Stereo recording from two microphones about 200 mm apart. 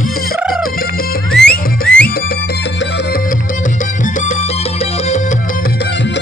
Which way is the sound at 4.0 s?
35° left (ahead or behind).